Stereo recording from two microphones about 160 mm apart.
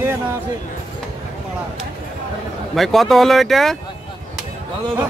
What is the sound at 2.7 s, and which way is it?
Speech, centre (ahead or behind).